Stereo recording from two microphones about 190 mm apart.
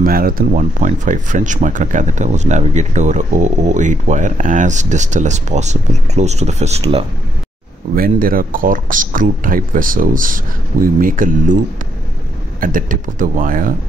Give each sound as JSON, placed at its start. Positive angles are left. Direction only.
{"t": 0.0, "sound": "speech", "side_deg": -50}
{"t": 7.9, "sound": "speech", "side_deg": -50}